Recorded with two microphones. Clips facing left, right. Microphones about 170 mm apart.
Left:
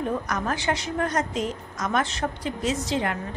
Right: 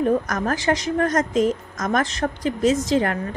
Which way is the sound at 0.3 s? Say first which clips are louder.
Right 5 dB; 45° right (ahead or behind).